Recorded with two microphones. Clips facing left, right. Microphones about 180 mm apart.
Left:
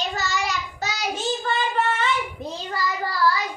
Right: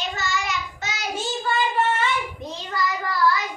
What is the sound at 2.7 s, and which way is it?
Child singing, 30° left (ahead or behind).